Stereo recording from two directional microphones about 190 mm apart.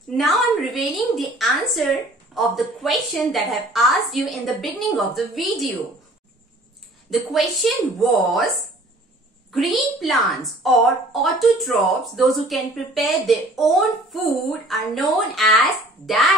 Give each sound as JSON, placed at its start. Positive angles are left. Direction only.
{"t": 0.2, "sound": "a woman's voice", "side_deg": 0}
{"t": 7.1, "sound": "a woman's voice", "side_deg": 0}
{"t": 9.5, "sound": "a woman's voice", "side_deg": 0}